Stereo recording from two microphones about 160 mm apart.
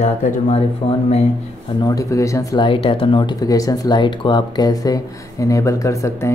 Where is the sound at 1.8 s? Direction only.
20° left (ahead or behind).